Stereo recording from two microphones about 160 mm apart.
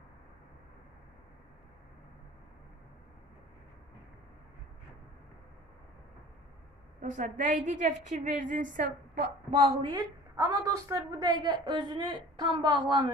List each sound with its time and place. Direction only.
7.0 s a woman's voice: 55° right (ahead or behind)
9.8 s a woman's voice: 30° right (ahead or behind)